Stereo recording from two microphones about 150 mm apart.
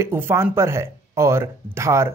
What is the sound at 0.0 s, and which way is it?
Speech, 15° right (ahead or behind).